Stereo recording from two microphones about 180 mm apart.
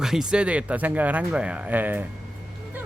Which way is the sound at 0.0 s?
5° right (ahead or behind).